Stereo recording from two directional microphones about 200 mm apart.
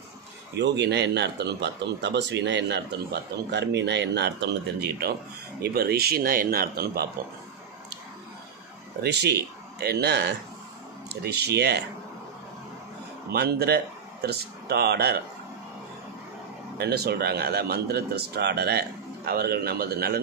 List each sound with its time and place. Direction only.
0.6 s speech: 60° right (ahead or behind)
9.0 s speech: 55° right (ahead or behind)
13.3 s speech: 55° right (ahead or behind)
16.7 s speech: 55° right (ahead or behind)